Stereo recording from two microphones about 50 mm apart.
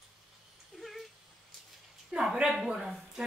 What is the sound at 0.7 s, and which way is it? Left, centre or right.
Cat, centre.